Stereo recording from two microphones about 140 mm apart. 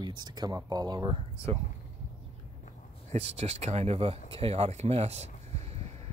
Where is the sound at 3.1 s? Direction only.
45° right (ahead or behind).